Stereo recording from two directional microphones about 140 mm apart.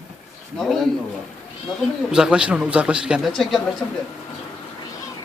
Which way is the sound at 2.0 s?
5° right (ahead or behind).